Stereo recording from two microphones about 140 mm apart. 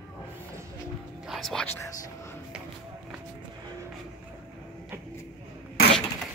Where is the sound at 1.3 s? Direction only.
Centre (ahead or behind).